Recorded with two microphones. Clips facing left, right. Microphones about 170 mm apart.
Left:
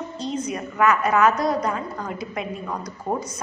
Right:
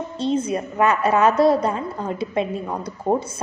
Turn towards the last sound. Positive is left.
turn(degrees=-25)  # may be behind; listen again after turning